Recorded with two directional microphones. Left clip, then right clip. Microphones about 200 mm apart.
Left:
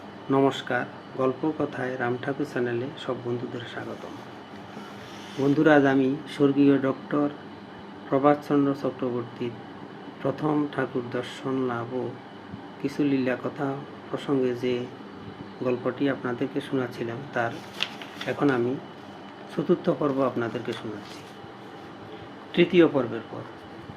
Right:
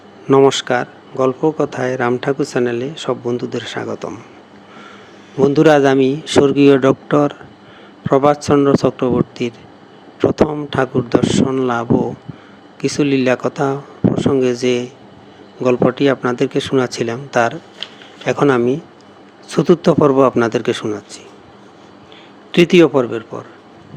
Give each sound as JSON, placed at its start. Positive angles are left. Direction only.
{"t": 0.3, "sound": "speech", "side_deg": -50}
{"t": 5.5, "sound": "speech", "side_deg": -50}
{"t": 22.5, "sound": "speech", "side_deg": -55}